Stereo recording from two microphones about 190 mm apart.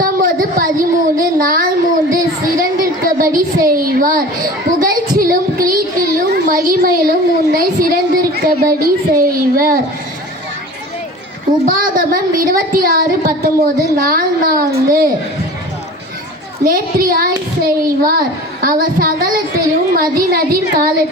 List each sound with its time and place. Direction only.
0.0 s child singing: 50° right (ahead or behind)
2.1 s a sound: 50° right (ahead or behind)
3.3 s a child's voice: 50° right (ahead or behind)
11.7 s a child's voice: 50° right (ahead or behind)
16.6 s a child's voice: 50° right (ahead or behind)